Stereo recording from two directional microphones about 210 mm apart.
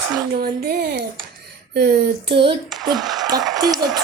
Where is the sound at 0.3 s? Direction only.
45° right (ahead or behind).